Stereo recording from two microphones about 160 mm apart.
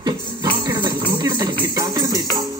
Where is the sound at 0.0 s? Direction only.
25° right (ahead or behind).